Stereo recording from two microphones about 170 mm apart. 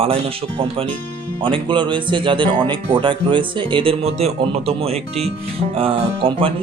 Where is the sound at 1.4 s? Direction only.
30° right (ahead or behind).